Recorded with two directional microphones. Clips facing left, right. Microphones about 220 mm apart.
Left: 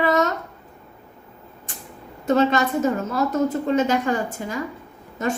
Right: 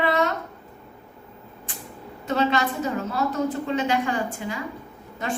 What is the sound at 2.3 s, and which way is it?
A woman's voice, 45° left (ahead or behind).